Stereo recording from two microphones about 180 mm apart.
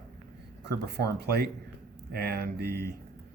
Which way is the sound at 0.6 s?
65° right (ahead or behind).